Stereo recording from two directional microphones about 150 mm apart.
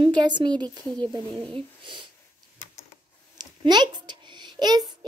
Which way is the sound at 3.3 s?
30° right (ahead or behind).